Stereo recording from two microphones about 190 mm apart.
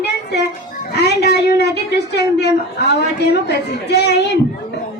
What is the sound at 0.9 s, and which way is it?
A woman's voice, 60° left (ahead or behind).